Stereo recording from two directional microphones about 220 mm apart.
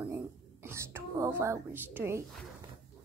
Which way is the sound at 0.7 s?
10° right (ahead or behind).